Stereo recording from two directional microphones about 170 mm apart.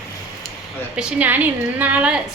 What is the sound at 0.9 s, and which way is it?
A woman's voice, 10° right (ahead or behind).